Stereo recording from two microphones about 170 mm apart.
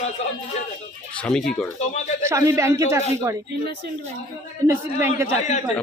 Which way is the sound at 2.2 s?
15° right (ahead or behind).